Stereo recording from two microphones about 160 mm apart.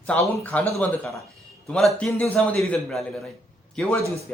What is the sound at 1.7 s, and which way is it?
Speech, 5° left (ahead or behind).